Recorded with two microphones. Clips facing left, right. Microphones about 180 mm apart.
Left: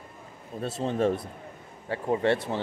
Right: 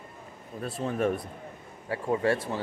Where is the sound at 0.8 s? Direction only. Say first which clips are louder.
Left 2 dB; 25° left (ahead or behind).